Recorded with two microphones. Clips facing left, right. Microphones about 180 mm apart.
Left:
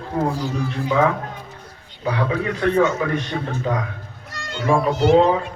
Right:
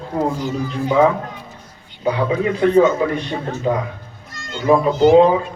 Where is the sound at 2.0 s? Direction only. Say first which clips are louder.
Right 4 dB; 20° right (ahead or behind).